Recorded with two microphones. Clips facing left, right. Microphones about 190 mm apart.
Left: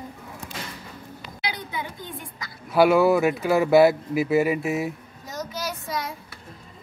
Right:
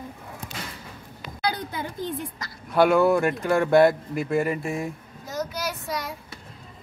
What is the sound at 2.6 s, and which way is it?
Speech, 5° left (ahead or behind).